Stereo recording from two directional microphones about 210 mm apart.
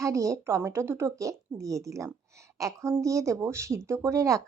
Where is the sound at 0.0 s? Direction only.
15° right (ahead or behind).